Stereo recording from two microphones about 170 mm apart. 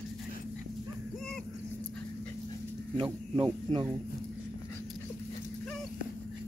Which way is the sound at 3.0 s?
25° right (ahead or behind).